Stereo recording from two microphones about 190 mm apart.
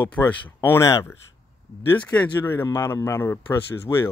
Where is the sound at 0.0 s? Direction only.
10° left (ahead or behind).